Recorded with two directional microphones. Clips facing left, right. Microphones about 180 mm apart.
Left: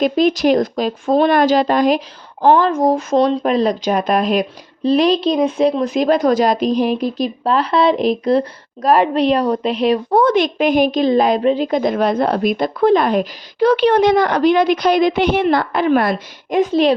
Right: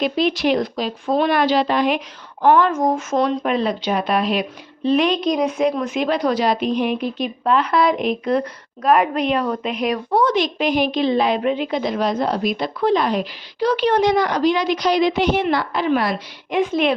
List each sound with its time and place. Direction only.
0.0 s a woman's voice: 45° left (ahead or behind)
2.4 s speech: 30° left (ahead or behind)
10.1 s a woman's voice: 50° left (ahead or behind)